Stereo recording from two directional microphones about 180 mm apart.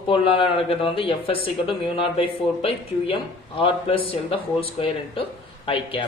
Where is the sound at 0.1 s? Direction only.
30° left (ahead or behind).